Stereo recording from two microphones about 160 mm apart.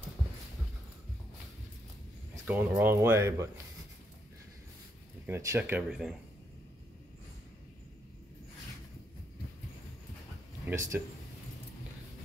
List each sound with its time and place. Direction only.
2.4 s speech: 10° right (ahead or behind)
5.2 s speech: 15° right (ahead or behind)
10.7 s speech: 15° right (ahead or behind)